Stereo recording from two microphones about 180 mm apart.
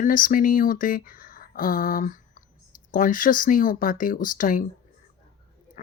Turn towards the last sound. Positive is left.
turn(degrees=50)  # may be behind; listen again after turning